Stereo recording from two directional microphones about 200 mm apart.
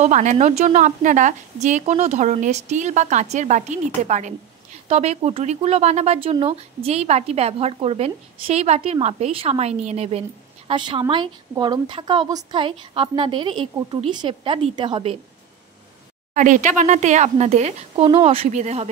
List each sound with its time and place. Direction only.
0.0 s a woman's voice: 35° right (ahead or behind)
16.3 s speech: 40° right (ahead or behind)